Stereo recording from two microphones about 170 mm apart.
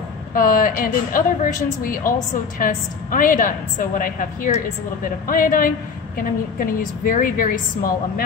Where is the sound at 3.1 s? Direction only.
55° left (ahead or behind).